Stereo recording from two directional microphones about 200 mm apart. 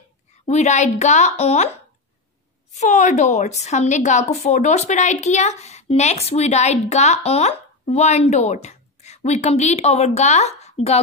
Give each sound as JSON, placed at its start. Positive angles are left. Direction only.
{"t": 0.5, "sound": "a woman's voice", "side_deg": 35}
{"t": 2.8, "sound": "a woman's voice", "side_deg": 35}